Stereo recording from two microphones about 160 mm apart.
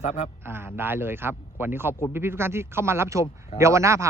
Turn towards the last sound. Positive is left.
turn(degrees=-20)  # may be behind; listen again after turning